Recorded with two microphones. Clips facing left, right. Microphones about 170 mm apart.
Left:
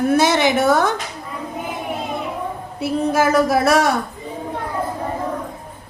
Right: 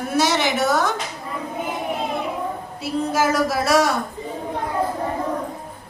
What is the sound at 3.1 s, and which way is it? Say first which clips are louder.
Speech: left 5 dB; 55° left (ahead or behind).